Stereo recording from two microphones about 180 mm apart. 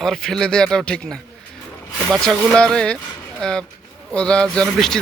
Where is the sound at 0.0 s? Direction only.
Centre (ahead or behind).